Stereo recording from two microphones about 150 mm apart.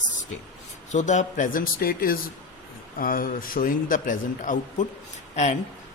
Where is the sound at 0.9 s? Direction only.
50° left (ahead or behind).